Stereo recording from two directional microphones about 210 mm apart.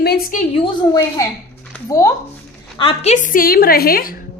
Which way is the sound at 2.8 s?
30° left (ahead or behind).